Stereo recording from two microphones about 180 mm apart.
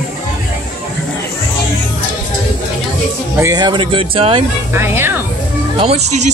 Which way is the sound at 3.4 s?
20° right (ahead or behind).